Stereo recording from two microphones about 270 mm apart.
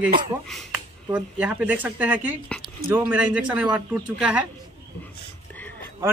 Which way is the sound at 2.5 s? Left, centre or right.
Centre.